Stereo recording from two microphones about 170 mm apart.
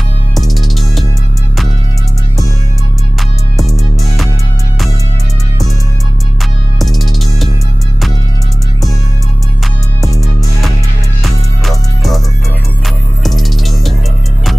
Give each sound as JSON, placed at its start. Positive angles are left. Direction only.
{"t": 0.3, "sound": "music", "side_deg": 0}
{"t": 6.8, "sound": "music", "side_deg": 0}
{"t": 11.2, "sound": "music", "side_deg": 0}
{"t": 13.2, "sound": "music", "side_deg": 0}